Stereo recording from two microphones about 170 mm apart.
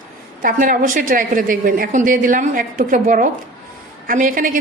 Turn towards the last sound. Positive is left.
turn(degrees=-50)  # may be behind; listen again after turning